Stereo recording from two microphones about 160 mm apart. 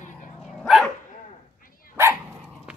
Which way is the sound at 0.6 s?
Centre (ahead or behind).